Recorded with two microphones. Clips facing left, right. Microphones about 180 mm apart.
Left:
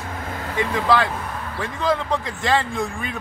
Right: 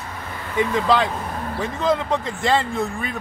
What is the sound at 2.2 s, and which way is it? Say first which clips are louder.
Speech: right 1 dB; 15° left (ahead or behind).